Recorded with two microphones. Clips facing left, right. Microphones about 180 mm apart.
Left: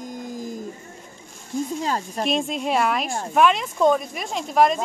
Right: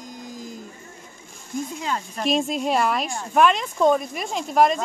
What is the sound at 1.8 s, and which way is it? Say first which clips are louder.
Speech: left 3 dB; 35° left (ahead or behind).